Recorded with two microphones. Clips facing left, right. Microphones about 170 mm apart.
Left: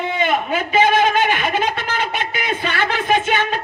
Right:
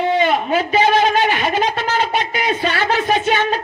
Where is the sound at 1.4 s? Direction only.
50° left (ahead or behind).